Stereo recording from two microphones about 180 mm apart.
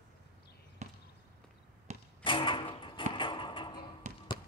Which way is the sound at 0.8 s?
40° right (ahead or behind).